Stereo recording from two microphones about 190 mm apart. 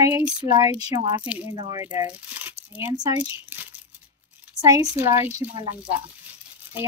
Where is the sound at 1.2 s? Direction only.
10° right (ahead or behind).